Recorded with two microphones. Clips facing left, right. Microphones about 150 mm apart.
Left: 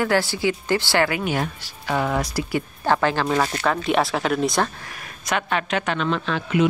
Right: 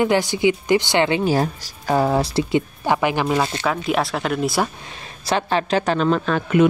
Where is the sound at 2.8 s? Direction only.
15° right (ahead or behind).